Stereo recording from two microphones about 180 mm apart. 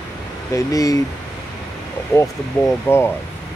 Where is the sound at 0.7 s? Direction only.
20° left (ahead or behind).